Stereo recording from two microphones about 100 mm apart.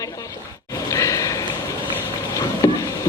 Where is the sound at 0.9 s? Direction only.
35° left (ahead or behind).